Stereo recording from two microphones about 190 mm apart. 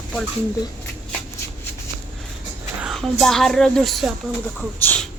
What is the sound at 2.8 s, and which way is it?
Speech, centre (ahead or behind).